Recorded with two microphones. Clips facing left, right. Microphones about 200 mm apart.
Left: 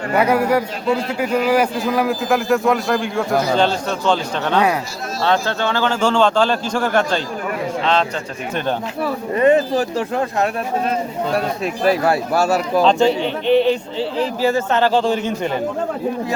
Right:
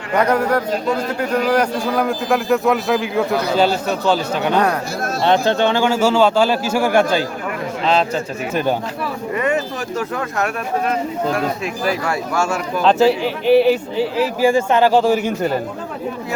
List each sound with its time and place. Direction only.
0.2 s a man's voice: 10° left (ahead or behind)
0.7 s a man's voice: 40° right (ahead or behind)
1.2 s a man's voice: 5° left (ahead or behind)
5.2 s speech: 20° right (ahead or behind)
9.3 s speech: 35° left (ahead or behind)
12.8 s speech: 5° right (ahead or behind)